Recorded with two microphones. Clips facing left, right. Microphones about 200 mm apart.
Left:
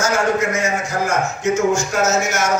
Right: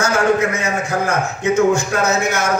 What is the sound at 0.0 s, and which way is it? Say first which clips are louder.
A man's voice: right 2 dB; 60° right (ahead or behind).